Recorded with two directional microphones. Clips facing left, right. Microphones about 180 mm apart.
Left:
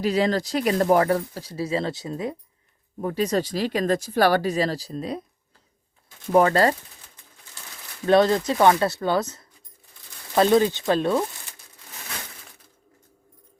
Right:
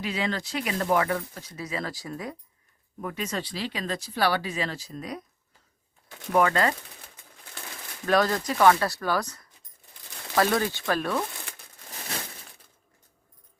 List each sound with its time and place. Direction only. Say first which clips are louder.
0.0 s speech: left 8 dB; 40° left (ahead or behind)
6.3 s speech: left 5 dB; 35° left (ahead or behind)
8.0 s speech: left 6 dB; 25° left (ahead or behind)